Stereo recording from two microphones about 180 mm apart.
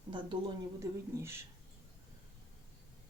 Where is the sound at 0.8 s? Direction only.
15° right (ahead or behind).